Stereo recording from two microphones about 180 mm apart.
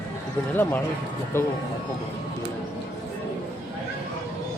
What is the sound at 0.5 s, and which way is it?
Speech, 10° left (ahead or behind).